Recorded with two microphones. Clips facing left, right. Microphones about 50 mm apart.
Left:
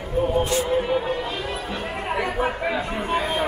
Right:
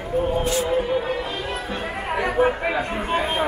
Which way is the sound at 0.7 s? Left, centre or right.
Centre.